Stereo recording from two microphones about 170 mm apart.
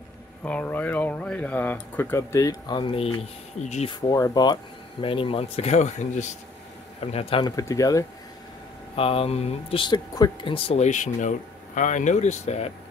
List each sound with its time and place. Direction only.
0.4 s speech: 10° left (ahead or behind); by 3.9 s 40° left (ahead or behind)
3.9 s speech: 20° left (ahead or behind)
8.9 s speech: 35° left (ahead or behind)